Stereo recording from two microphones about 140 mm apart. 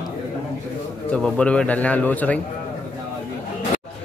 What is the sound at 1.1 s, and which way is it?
A man's voice, 10° left (ahead or behind).